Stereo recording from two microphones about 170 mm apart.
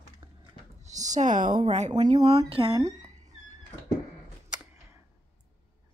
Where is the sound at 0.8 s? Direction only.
45° right (ahead or behind).